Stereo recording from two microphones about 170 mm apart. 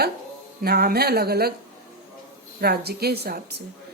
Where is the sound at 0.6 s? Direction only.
65° right (ahead or behind).